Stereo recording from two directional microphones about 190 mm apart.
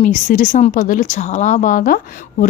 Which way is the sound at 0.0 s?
40° left (ahead or behind).